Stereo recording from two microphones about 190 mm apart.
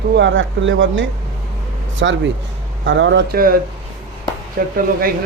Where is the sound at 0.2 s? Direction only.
75° right (ahead or behind).